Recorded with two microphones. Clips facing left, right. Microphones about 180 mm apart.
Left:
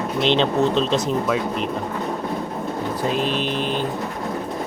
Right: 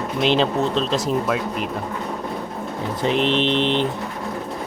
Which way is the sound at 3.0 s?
20° right (ahead or behind).